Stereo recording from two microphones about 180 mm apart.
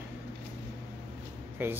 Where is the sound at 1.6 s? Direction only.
10° right (ahead or behind).